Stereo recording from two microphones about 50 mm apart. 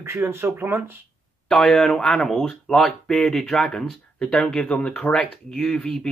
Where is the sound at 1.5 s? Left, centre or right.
Centre.